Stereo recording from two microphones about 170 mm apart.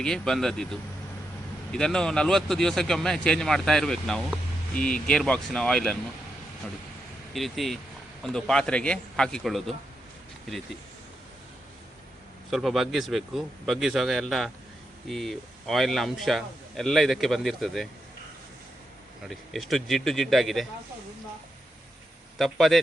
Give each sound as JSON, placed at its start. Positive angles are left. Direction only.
{"t": 0.0, "sound": "speech", "side_deg": 5}
{"t": 7.3, "sound": "speech", "side_deg": 0}
{"t": 12.5, "sound": "speech", "side_deg": 0}
{"t": 19.3, "sound": "speech", "side_deg": 0}
{"t": 22.4, "sound": "speech", "side_deg": 0}